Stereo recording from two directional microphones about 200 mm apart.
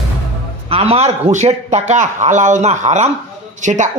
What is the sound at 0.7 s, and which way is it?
A man's voice, 30° right (ahead or behind).